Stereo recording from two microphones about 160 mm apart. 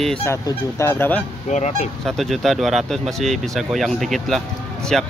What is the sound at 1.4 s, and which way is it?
Speech, 45° left (ahead or behind).